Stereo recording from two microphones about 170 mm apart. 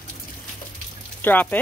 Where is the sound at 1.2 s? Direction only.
10° left (ahead or behind).